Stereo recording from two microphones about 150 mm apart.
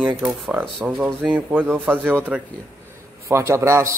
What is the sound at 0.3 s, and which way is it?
A man's voice, 10° right (ahead or behind).